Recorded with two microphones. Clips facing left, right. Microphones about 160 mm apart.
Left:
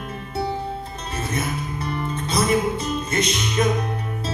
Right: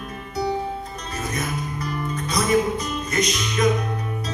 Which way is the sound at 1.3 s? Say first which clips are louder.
Left 2 dB; 30° left (ahead or behind).